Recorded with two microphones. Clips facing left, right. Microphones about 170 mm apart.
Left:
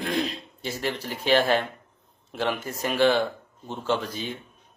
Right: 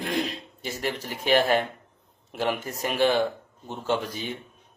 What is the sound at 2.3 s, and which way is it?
Speech, 10° right (ahead or behind).